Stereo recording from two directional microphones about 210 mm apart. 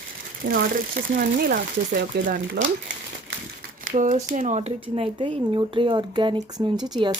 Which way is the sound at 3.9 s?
35° right (ahead or behind).